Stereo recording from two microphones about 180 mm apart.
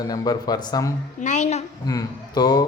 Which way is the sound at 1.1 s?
40° left (ahead or behind).